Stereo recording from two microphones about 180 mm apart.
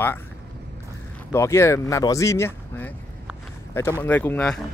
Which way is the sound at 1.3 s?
15° left (ahead or behind).